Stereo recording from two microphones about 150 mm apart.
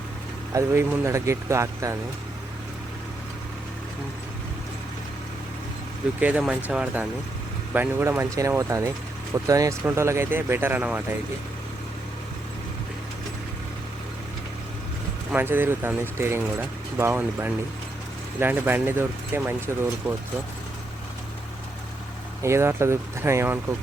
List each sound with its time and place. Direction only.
0.5 s speech: 15° right (ahead or behind)
6.1 s speech: 10° right (ahead or behind)
15.3 s speech: 15° right (ahead or behind)
22.4 s speech: 20° right (ahead or behind)